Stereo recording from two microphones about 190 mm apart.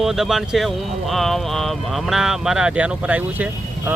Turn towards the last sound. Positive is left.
turn(degrees=-10)  # may be behind; listen again after turning